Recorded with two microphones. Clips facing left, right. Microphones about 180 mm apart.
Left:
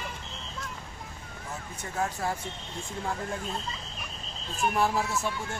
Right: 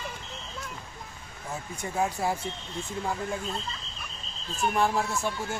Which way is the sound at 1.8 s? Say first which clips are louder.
Right 3 dB; 10° right (ahead or behind).